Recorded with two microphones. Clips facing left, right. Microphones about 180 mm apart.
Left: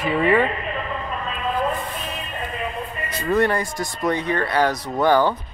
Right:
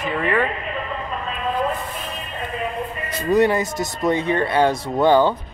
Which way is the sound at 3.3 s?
20° right (ahead or behind).